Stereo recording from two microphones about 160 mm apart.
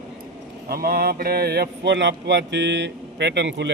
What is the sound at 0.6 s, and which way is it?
Speech, 70° right (ahead or behind).